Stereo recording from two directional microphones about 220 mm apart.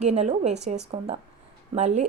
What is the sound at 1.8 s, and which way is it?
Speech, 30° right (ahead or behind).